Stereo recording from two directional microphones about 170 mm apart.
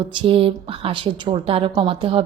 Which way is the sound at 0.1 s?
30° right (ahead or behind).